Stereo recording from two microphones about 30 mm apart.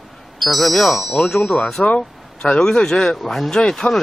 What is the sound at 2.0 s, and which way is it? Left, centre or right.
Speech, left.